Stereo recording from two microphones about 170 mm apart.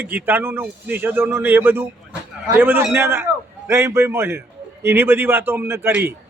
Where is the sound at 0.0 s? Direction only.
10° right (ahead or behind).